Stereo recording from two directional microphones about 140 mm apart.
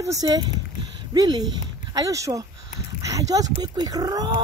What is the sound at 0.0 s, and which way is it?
Speech, 25° right (ahead or behind).